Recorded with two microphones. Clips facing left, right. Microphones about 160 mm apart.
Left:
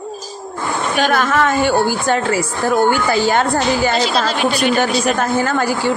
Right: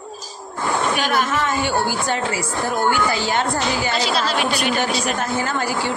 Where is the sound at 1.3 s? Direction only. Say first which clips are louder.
Left 6 dB; 50° left (ahead or behind).